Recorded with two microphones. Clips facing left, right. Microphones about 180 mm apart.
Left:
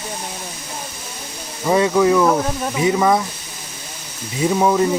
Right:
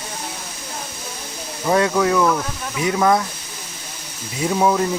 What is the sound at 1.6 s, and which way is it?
Speech, 5° left (ahead or behind).